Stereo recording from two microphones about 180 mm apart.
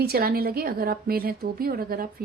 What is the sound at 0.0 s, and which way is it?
A woman's voice, 60° right (ahead or behind).